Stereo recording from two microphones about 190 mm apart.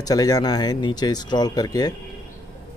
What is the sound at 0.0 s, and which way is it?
Speech, 20° left (ahead or behind).